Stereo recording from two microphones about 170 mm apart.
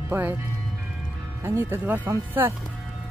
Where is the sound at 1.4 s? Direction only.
15° right (ahead or behind).